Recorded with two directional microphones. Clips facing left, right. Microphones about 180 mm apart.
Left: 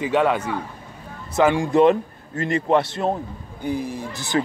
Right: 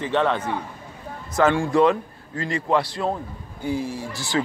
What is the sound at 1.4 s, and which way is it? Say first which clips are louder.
Speech: left 2 dB; 15° left (ahead or behind).